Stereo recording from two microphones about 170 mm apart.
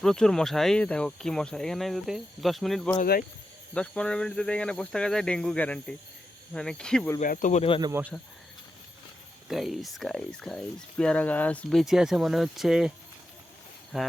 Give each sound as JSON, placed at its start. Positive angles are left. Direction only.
{"t": 0.0, "sound": "speech", "side_deg": 5}
{"t": 3.0, "sound": "speech", "side_deg": 50}
{"t": 3.8, "sound": "speech", "side_deg": 5}
{"t": 7.2, "sound": "speech", "side_deg": 50}
{"t": 7.8, "sound": "speech", "side_deg": -20}
{"t": 9.5, "sound": "speech", "side_deg": 0}
{"t": 13.9, "sound": "speech", "side_deg": 0}